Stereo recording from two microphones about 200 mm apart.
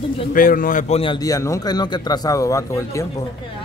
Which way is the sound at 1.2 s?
15° left (ahead or behind).